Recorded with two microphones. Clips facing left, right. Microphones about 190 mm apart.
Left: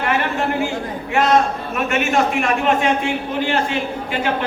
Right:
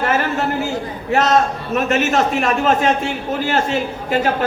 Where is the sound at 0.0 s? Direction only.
40° right (ahead or behind).